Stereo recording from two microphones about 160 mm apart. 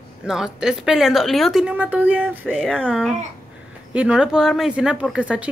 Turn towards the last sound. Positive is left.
turn(degrees=-5)  # may be behind; listen again after turning